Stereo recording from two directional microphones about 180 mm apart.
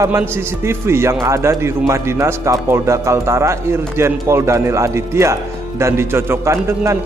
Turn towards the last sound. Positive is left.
turn(degrees=-15)  # may be behind; listen again after turning